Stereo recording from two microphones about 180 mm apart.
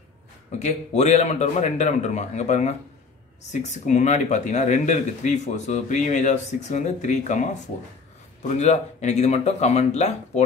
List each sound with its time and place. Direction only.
0.5 s speech: 40° left (ahead or behind)